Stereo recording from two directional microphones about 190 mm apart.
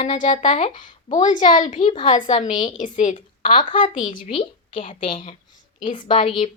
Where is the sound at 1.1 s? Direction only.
40° left (ahead or behind).